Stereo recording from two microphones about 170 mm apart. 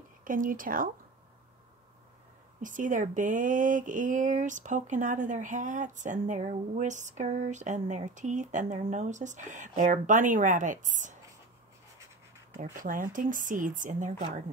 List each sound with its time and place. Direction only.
0.2 s speech: 55° right (ahead or behind)
2.6 s speech: 50° right (ahead or behind)
12.5 s speech: 55° right (ahead or behind)